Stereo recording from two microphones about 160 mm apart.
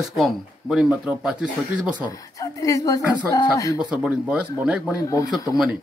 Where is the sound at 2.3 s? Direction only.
20° left (ahead or behind).